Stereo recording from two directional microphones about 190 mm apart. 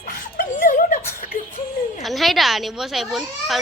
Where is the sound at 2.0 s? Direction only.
Centre (ahead or behind).